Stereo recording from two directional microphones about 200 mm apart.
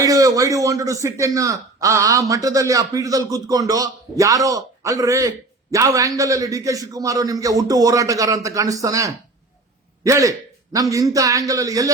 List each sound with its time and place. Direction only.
0.0 s a man's voice: 15° right (ahead or behind)